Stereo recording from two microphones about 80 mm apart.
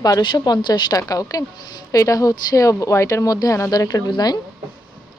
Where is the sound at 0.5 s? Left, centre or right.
Left.